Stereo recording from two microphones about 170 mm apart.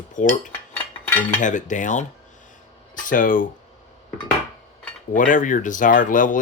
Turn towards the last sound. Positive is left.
turn(degrees=50)  # may be behind; listen again after turning